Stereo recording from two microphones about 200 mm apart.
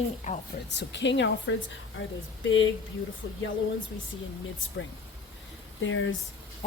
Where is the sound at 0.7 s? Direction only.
60° left (ahead or behind).